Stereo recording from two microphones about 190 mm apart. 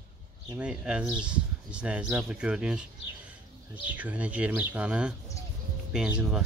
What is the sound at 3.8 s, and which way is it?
Speech, 10° right (ahead or behind).